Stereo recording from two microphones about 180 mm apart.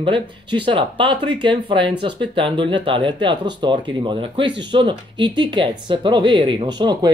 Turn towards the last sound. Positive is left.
turn(degrees=-25)  # may be behind; listen again after turning